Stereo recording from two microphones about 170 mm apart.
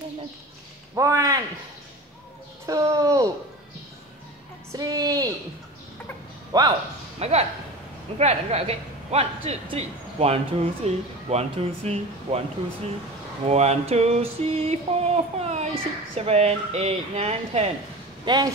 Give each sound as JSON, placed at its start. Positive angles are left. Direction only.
{"t": 0.9, "sound": "speech", "side_deg": -20}
{"t": 2.6, "sound": "speech", "side_deg": -20}
{"t": 4.7, "sound": "a woman's voice", "side_deg": -20}
{"t": 6.5, "sound": "speech", "side_deg": -25}
{"t": 7.2, "sound": "a woman's voice", "side_deg": -35}
{"t": 13.5, "sound": "a woman's voice", "side_deg": -40}
{"t": 18.2, "sound": "speech", "side_deg": -25}